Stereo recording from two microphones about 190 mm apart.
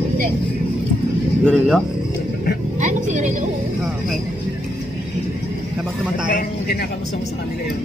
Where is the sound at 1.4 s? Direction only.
5° left (ahead or behind).